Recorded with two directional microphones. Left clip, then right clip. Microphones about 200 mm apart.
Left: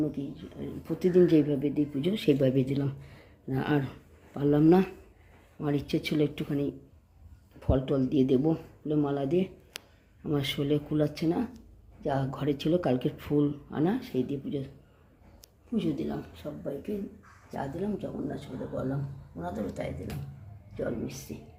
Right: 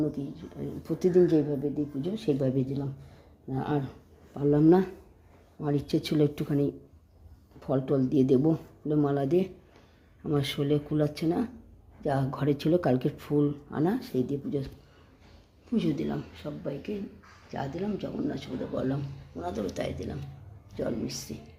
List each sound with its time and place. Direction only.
0.0 s speech: 10° right (ahead or behind)
1.3 s speech: 10° left (ahead or behind)
4.6 s speech: 5° right (ahead or behind)
15.7 s speech: 15° right (ahead or behind)